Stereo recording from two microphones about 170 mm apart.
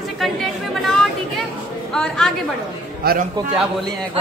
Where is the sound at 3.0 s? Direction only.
65° right (ahead or behind).